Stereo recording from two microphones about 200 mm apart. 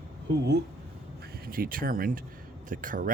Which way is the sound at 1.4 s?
45° right (ahead or behind).